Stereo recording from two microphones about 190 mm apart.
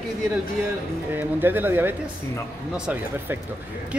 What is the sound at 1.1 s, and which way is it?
A woman's voice, 10° right (ahead or behind).